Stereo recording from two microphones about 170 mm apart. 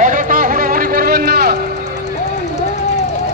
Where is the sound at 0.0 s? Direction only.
50° right (ahead or behind); by 1.6 s 65° right (ahead or behind).